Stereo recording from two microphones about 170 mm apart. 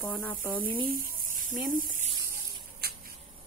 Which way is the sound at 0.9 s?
55° right (ahead or behind).